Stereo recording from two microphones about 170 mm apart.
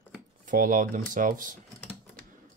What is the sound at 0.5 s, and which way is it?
Speech, 55° right (ahead or behind).